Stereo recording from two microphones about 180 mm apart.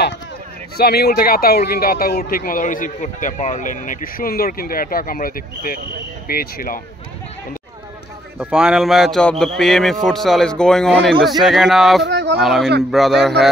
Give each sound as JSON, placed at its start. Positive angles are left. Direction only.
{"t": 0.7, "sound": "a man's voice", "side_deg": 60}
{"t": 8.4, "sound": "a man's voice", "side_deg": -5}
{"t": 12.1, "sound": "a sound", "side_deg": -70}
{"t": 12.4, "sound": "a man's voice", "side_deg": 0}